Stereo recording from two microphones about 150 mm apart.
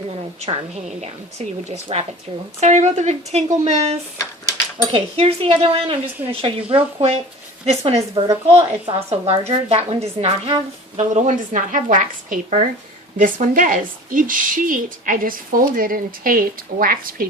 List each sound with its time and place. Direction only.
0.4 s a woman's voice: 45° right (ahead or behind); by 17.2 s 70° right (ahead or behind)